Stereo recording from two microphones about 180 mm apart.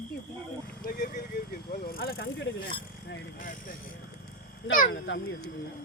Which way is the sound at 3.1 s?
65° left (ahead or behind).